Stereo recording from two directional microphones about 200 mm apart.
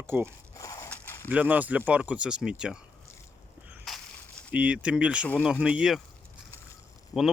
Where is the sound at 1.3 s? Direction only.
5° right (ahead or behind).